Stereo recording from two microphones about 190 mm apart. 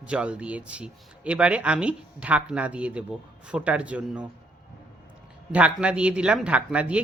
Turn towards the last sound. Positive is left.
turn(degrees=-5)  # may be behind; listen again after turning